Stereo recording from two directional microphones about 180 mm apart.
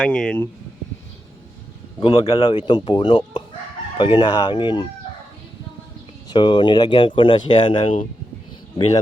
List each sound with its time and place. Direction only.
0.0 s speech: 5° left (ahead or behind)
2.0 s speech: 30° left (ahead or behind)
6.2 s speech: 25° left (ahead or behind)